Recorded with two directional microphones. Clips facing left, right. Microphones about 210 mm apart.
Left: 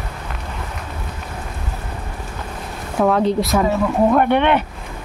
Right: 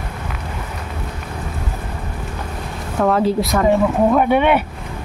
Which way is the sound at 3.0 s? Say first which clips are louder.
Even; centre (ahead or behind).